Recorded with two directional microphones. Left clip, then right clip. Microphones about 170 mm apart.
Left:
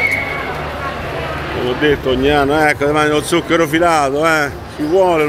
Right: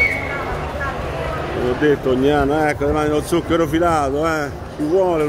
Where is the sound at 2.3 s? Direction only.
10° right (ahead or behind).